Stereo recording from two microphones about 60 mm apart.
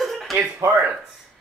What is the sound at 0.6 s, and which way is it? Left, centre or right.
Speech, right.